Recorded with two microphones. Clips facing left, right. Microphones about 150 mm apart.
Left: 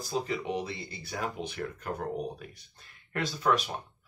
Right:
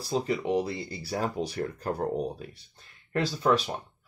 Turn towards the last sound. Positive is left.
turn(degrees=-30)  # may be behind; listen again after turning